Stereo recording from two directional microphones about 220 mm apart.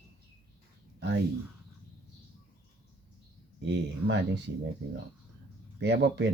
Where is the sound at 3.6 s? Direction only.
55° right (ahead or behind).